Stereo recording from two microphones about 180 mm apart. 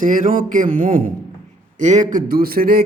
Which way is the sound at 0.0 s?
45° right (ahead or behind).